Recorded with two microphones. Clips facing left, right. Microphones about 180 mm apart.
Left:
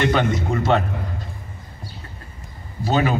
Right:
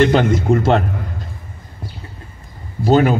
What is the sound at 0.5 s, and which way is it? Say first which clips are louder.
Speech: right 6 dB; 50° right (ahead or behind).